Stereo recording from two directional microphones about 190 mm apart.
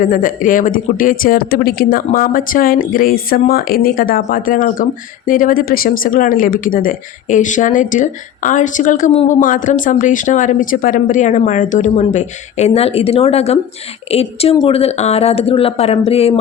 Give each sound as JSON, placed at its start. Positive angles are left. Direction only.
{"t": 0.0, "sound": "speech", "side_deg": 45}